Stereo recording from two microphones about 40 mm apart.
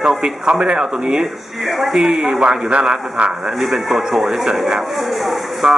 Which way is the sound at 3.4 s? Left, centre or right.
Centre.